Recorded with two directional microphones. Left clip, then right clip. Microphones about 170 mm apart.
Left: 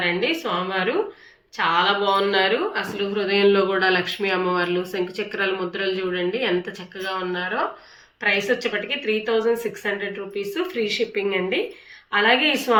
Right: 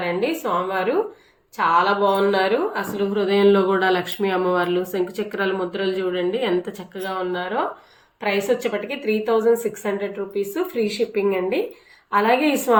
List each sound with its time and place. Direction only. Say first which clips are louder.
0.0 s a woman's voice: even; 50° right (ahead or behind)